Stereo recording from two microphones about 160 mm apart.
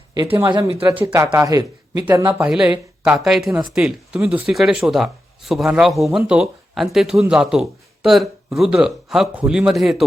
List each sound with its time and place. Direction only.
0.3 s speech: 20° right (ahead or behind); by 10.0 s centre (ahead or behind)